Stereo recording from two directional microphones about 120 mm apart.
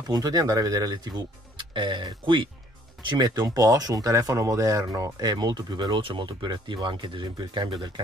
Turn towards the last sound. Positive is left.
turn(degrees=-40)  # may be behind; listen again after turning